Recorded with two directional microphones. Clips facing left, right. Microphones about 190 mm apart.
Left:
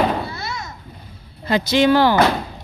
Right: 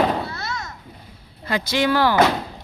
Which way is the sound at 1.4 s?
25° left (ahead or behind).